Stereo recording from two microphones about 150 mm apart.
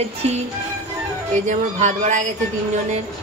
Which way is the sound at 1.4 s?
55° right (ahead or behind).